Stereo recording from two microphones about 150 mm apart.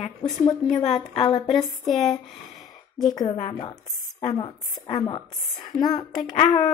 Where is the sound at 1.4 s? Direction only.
Centre (ahead or behind).